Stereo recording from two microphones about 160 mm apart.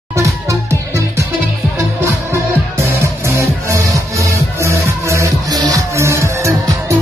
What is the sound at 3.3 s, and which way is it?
Music, 20° right (ahead or behind).